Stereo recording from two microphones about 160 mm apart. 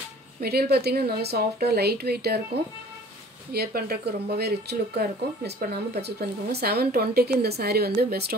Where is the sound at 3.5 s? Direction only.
80° right.